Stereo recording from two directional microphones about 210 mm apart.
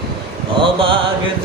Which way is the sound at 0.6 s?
25° right (ahead or behind).